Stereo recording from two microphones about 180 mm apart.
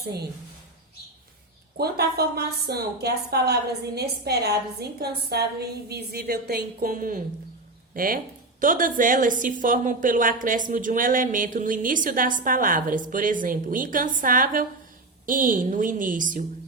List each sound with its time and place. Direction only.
1.8 s a woman's voice: 60° right (ahead or behind)